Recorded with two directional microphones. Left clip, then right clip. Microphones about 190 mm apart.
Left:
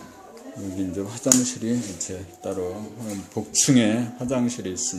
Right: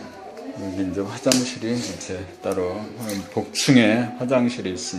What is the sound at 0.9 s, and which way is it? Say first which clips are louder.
Speech: right 1 dB; 45° left (ahead or behind).